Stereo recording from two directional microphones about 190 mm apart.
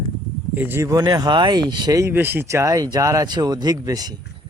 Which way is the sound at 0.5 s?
10° right (ahead or behind).